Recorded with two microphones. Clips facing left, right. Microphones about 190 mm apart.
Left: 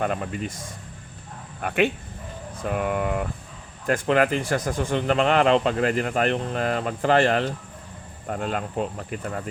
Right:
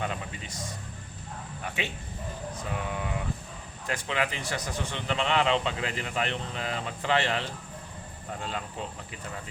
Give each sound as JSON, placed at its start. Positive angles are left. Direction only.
{"t": 0.0, "sound": "speech", "side_deg": 55}
{"t": 1.6, "sound": "speech", "side_deg": 60}